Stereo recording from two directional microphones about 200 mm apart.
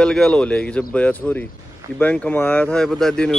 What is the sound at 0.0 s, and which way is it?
A man's voice, 5° left (ahead or behind).